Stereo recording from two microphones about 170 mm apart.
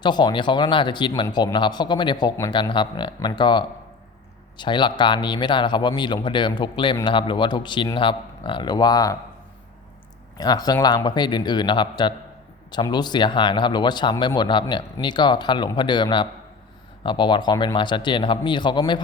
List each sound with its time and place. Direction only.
0.0 s speech: 25° left (ahead or behind)
10.3 s speech: 25° left (ahead or behind)